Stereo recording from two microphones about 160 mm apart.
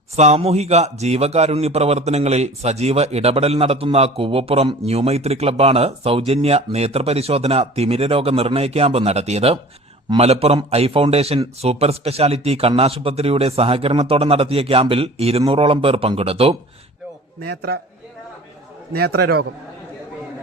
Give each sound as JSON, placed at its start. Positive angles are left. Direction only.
{"t": 0.2, "sound": "a man's voice", "side_deg": -40}
{"t": 17.5, "sound": "a man's voice", "side_deg": -90}
{"t": 18.9, "sound": "a man's voice", "side_deg": -85}